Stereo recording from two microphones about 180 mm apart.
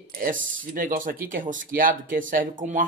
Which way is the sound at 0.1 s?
50° right (ahead or behind).